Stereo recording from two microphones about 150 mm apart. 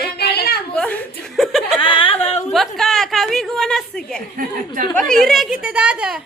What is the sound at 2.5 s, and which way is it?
A woman's voice, centre (ahead or behind).